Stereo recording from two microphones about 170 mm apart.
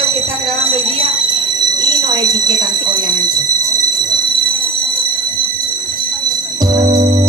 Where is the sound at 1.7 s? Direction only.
25° right (ahead or behind).